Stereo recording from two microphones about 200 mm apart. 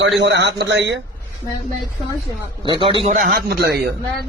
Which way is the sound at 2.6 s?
25° right (ahead or behind).